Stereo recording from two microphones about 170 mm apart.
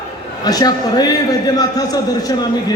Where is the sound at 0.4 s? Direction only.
25° left (ahead or behind).